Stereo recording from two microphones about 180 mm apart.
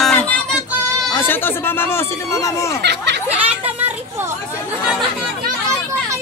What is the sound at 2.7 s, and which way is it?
Speech, 70° right (ahead or behind).